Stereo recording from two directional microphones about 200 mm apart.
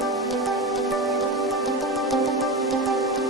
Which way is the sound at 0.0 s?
Centre (ahead or behind).